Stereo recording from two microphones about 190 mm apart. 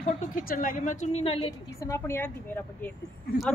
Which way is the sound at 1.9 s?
15° left (ahead or behind).